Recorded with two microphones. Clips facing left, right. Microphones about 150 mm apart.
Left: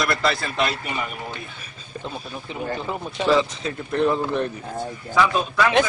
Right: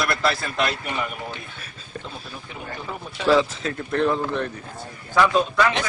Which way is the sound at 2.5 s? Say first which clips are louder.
Left 6 dB; 20° left (ahead or behind).